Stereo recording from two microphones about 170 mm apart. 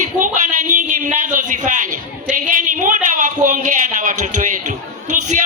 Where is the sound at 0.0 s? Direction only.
45° right (ahead or behind).